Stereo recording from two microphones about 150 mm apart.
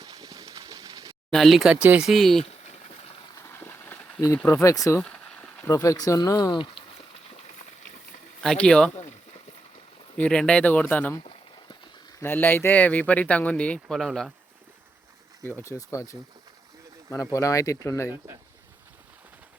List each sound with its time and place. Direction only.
0.0 s a sound: 25° right (ahead or behind)
1.3 s speech: centre (ahead or behind)
2.4 s a sound: 45° left (ahead or behind)
3.3 s a sound: 15° left (ahead or behind)
4.4 s speech: 15° left (ahead or behind)
5.0 s a sound: 5° left (ahead or behind)
5.6 s speech: 20° left (ahead or behind)
8.4 s speech: 5° left (ahead or behind)
10.2 s speech: 5° left (ahead or behind)
12.2 s speech: 15° left (ahead or behind)
15.4 s speech: 15° left (ahead or behind)
17.3 s speech: 20° left (ahead or behind)